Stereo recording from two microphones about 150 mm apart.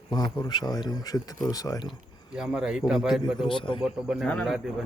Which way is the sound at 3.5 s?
35° left (ahead or behind).